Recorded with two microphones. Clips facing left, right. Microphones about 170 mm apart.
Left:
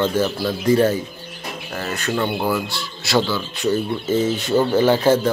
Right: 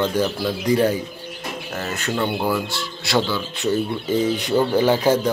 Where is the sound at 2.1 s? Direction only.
Centre (ahead or behind).